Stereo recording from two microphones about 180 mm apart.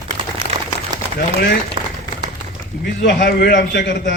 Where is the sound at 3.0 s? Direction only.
65° left (ahead or behind).